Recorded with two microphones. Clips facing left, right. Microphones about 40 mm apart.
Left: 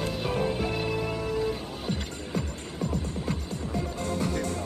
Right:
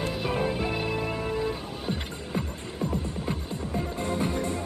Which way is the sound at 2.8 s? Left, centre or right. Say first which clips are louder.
Right 1 dB; right.